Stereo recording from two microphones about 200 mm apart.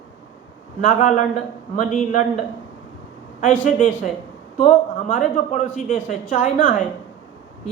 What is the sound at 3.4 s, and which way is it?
A man's voice, 40° left (ahead or behind).